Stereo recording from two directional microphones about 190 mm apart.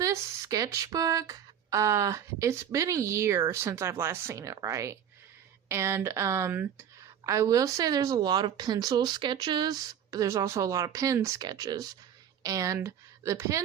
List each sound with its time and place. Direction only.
0.0 s a woman's voice: 15° right (ahead or behind)